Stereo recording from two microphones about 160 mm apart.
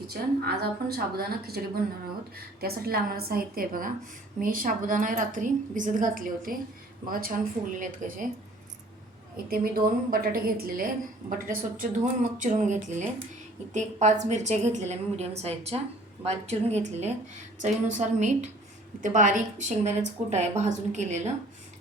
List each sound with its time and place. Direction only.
0.1 s a woman's voice: 75° right (ahead or behind)
9.5 s a woman's voice: 65° right (ahead or behind); by 21.3 s 45° right (ahead or behind)